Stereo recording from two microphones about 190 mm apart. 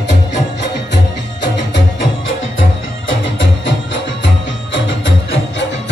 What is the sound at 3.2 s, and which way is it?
Music, 75° left (ahead or behind).